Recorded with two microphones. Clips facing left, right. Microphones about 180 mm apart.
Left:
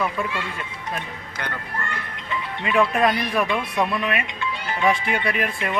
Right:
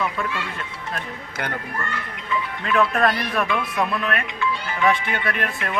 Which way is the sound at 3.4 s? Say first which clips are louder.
Left 1 dB; 25° left (ahead or behind).